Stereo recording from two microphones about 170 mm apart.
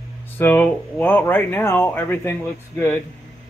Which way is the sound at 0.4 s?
10° left (ahead or behind).